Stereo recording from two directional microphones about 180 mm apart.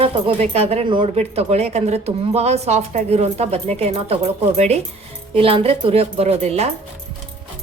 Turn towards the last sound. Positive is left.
turn(degrees=-35)  # may be behind; listen again after turning